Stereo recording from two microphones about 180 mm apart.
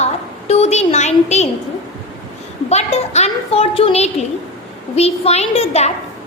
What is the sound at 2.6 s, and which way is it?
A woman's voice, 35° left (ahead or behind).